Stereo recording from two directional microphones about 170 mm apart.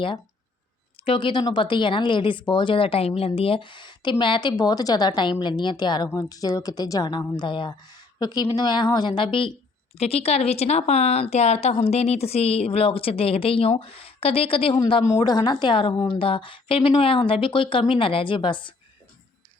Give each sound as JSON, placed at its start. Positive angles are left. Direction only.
{"t": 1.0, "sound": "a woman's voice", "side_deg": 30}